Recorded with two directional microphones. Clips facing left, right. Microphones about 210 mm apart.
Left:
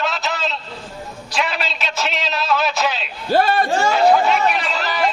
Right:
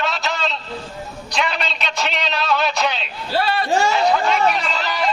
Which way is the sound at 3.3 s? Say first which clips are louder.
Left 4 dB; 45° left (ahead or behind).